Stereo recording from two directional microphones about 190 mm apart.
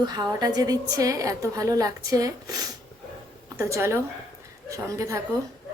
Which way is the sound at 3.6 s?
15° right (ahead or behind).